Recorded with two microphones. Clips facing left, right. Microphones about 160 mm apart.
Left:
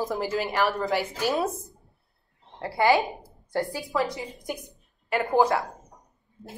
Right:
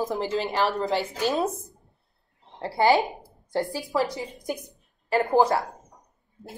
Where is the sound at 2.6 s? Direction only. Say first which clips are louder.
Right 1 dB; 30° right (ahead or behind).